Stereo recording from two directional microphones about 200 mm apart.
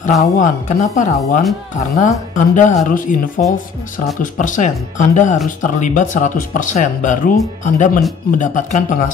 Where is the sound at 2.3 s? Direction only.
40° left (ahead or behind).